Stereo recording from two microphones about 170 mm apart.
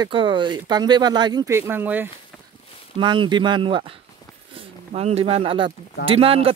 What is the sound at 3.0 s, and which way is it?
Speech, 25° right (ahead or behind).